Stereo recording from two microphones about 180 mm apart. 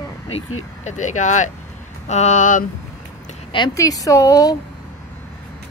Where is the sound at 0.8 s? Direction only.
40° left (ahead or behind).